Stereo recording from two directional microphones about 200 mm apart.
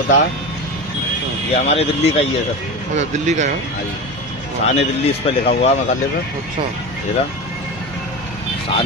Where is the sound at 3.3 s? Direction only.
35° right (ahead or behind).